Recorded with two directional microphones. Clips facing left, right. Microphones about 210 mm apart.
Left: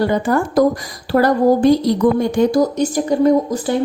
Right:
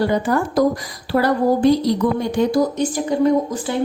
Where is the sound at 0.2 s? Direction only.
50° left (ahead or behind).